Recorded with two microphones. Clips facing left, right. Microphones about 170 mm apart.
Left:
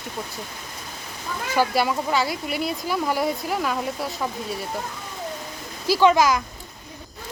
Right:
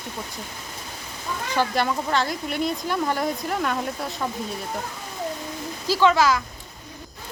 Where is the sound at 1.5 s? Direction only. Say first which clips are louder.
Left 2 dB; 10° left (ahead or behind).